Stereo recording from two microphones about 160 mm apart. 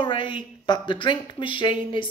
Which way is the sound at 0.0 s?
30° left (ahead or behind).